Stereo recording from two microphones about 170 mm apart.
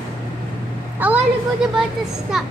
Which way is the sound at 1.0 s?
10° right (ahead or behind).